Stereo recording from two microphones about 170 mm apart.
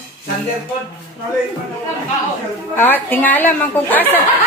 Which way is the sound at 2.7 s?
10° left (ahead or behind).